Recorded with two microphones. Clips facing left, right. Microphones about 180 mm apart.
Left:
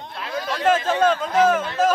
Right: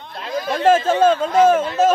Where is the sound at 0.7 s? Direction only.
25° right (ahead or behind).